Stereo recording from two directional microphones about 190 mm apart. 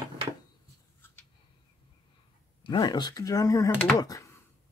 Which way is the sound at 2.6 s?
25° left (ahead or behind).